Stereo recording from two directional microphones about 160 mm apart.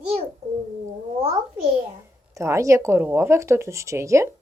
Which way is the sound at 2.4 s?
20° right (ahead or behind).